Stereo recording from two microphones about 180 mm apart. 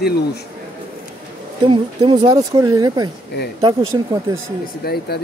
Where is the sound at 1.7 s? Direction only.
25° right (ahead or behind).